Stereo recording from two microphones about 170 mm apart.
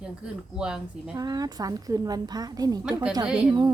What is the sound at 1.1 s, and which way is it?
A woman's voice, 20° right (ahead or behind).